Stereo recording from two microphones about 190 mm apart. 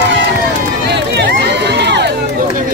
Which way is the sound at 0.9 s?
60° right (ahead or behind).